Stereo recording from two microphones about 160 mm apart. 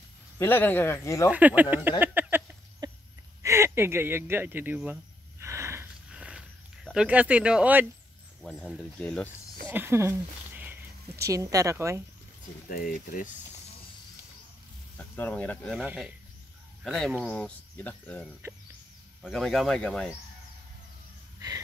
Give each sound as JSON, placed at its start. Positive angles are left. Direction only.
{"t": 0.4, "sound": "speech", "side_deg": 10}
{"t": 1.3, "sound": "speech", "side_deg": -10}
{"t": 2.8, "sound": "a sound", "side_deg": -25}
{"t": 3.4, "sound": "speech", "side_deg": -15}
{"t": 5.4, "sound": "a sound", "side_deg": -15}
{"t": 6.1, "sound": "a sound", "side_deg": -5}
{"t": 8.4, "sound": "speech", "side_deg": 0}
{"t": 9.7, "sound": "speech", "side_deg": -15}
{"t": 12.6, "sound": "speech", "side_deg": 60}
{"t": 15.0, "sound": "speech", "side_deg": 10}
{"t": 15.7, "sound": "speech", "side_deg": -5}
{"t": 18.4, "sound": "speech", "side_deg": -15}
{"t": 19.2, "sound": "speech", "side_deg": 0}